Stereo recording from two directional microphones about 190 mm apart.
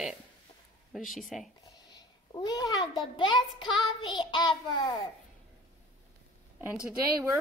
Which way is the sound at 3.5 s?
25° left (ahead or behind).